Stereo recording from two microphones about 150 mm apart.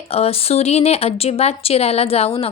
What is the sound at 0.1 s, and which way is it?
A woman's voice, 40° left (ahead or behind).